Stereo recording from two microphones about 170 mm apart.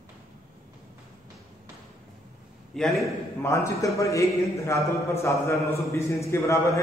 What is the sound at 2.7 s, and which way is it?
Speech, centre (ahead or behind).